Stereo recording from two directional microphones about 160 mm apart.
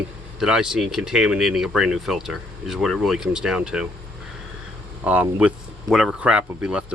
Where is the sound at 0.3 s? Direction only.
5° right (ahead or behind).